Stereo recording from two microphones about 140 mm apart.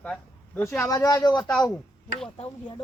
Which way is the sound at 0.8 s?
25° left (ahead or behind).